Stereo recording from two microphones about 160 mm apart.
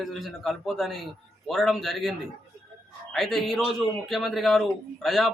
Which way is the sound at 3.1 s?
Centre (ahead or behind).